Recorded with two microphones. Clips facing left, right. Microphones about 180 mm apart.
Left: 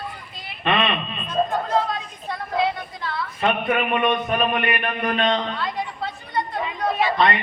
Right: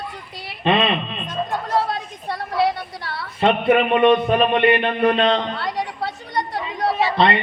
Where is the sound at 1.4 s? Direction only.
45° left (ahead or behind).